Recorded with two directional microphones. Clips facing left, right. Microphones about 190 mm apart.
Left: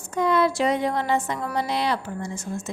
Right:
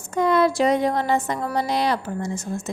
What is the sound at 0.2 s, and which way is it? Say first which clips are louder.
A woman's voice: right 3 dB; 45° right (ahead or behind).